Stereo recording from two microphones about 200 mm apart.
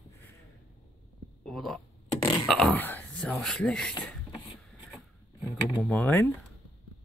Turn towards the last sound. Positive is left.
turn(degrees=10)  # may be behind; listen again after turning